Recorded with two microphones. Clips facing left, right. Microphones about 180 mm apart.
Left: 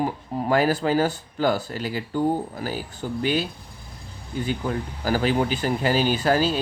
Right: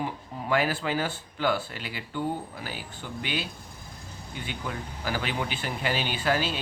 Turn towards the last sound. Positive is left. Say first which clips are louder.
# left 6 dB
turn(degrees=40)  # may be behind; listen again after turning